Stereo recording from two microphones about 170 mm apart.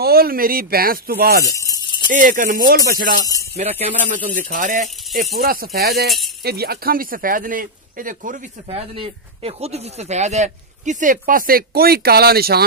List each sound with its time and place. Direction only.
0.0 s speech: 65° right (ahead or behind)
1.6 s rattle: 25° left (ahead or behind)
2.0 s speech: 55° right (ahead or behind)
3.5 s speech: 35° right (ahead or behind)
4.3 s speech: 50° right (ahead or behind)
5.3 s speech: 60° right (ahead or behind)
6.0 s speech: centre (ahead or behind)
6.4 s speech: 65° right (ahead or behind)
8.7 s speech: 35° right (ahead or behind); by 12.6 s 65° right (ahead or behind)